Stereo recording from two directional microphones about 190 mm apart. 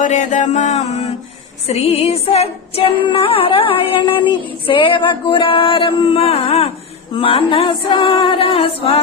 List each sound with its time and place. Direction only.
0.0 s music: 40° left (ahead or behind)